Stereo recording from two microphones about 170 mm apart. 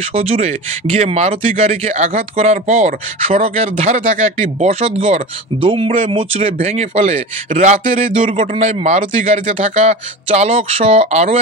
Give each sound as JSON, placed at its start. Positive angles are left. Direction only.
{"t": 0.1, "sound": "speech", "side_deg": -35}